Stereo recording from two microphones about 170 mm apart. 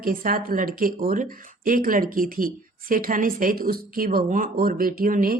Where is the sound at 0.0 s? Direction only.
55° right (ahead or behind).